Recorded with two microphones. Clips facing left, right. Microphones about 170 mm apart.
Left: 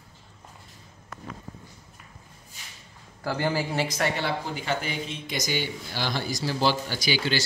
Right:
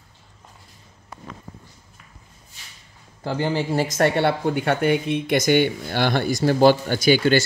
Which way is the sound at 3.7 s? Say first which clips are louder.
Right 7 dB; 45° right (ahead or behind).